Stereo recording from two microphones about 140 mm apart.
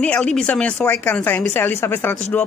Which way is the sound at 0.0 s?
10° left (ahead or behind).